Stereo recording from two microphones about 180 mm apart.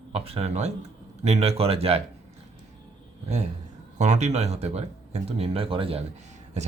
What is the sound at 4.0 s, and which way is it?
Speech, 40° right (ahead or behind).